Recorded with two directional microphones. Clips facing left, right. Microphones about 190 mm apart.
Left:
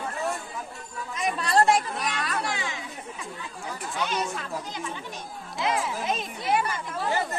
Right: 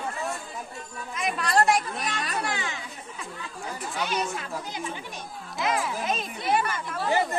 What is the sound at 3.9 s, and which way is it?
Speech, 10° right (ahead or behind).